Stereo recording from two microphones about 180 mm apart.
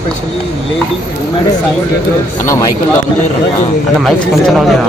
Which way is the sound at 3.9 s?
Centre (ahead or behind).